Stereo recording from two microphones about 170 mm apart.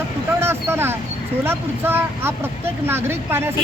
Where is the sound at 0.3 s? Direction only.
15° right (ahead or behind).